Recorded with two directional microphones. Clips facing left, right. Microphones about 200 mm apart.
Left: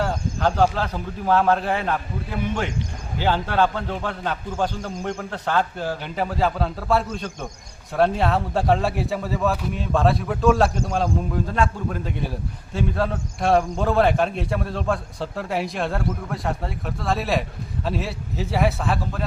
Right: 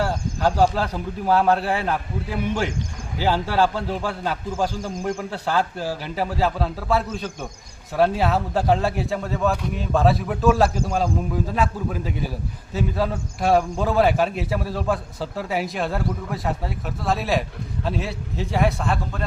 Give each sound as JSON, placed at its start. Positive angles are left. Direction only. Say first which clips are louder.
{"t": 0.0, "sound": "speech", "louder": "right 1 dB", "side_deg": -5}
{"t": 3.2, "sound": "a man's voice", "louder": "even", "side_deg": -5}